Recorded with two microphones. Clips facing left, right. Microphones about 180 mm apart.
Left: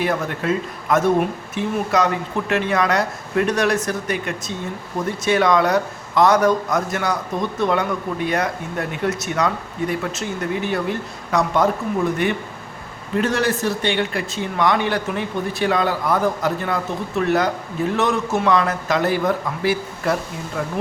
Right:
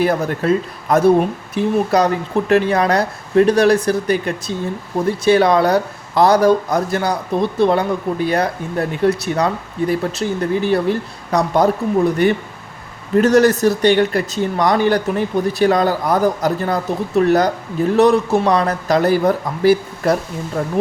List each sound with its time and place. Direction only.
0.0 s speech: 40° right (ahead or behind)